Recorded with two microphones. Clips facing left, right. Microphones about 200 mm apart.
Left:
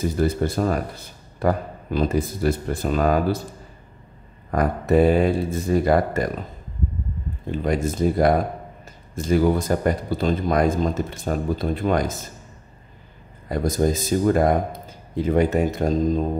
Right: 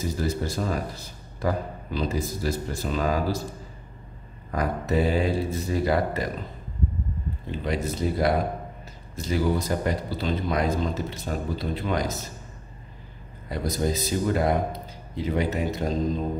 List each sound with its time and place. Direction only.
0.2 s speech: 55° left (ahead or behind)
4.5 s a man's voice: 55° left (ahead or behind)
7.6 s a man's voice: 50° left (ahead or behind)
13.5 s a man's voice: 50° left (ahead or behind)